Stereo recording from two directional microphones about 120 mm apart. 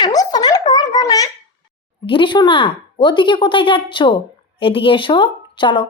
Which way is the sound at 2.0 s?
45° left (ahead or behind).